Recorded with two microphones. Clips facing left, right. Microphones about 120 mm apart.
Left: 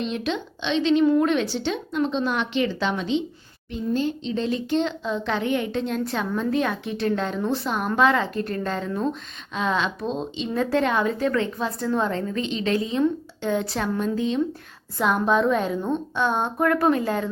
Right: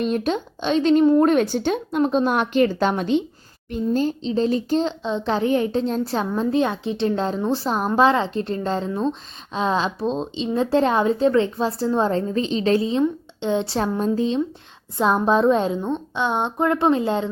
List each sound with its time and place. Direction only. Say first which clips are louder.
0.0 s a woman's voice: right 5 dB; 45° right (ahead or behind); by 15.8 s 30° right (ahead or behind)
15.8 s a woman's voice: even; 20° right (ahead or behind)